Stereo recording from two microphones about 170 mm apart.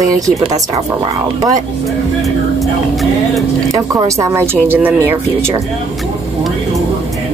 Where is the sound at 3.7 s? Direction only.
20° right (ahead or behind).